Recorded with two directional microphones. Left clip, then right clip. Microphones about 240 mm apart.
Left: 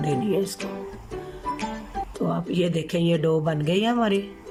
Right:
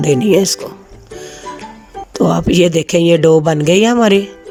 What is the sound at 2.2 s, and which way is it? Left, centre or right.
Speech, right.